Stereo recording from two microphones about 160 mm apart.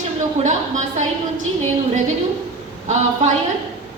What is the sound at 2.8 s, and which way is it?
Speech, 45° right (ahead or behind).